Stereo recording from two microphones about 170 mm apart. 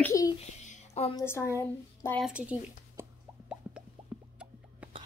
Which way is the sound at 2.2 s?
10° right (ahead or behind).